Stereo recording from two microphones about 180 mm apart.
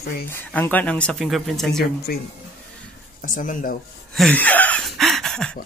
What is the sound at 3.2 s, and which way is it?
Speech, 50° left (ahead or behind).